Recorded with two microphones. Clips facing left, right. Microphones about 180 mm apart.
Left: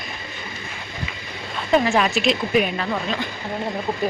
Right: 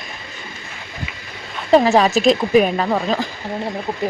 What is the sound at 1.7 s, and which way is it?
Speech, 35° right (ahead or behind).